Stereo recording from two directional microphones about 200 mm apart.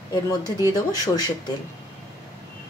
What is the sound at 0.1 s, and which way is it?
Speech, 20° left (ahead or behind).